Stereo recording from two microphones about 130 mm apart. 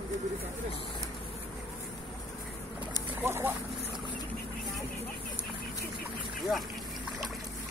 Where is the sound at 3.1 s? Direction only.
20° right (ahead or behind).